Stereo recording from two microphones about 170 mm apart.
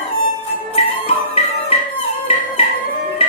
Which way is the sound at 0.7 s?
35° left (ahead or behind).